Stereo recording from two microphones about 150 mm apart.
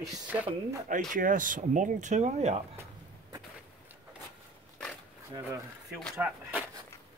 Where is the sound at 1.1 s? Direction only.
60° right (ahead or behind).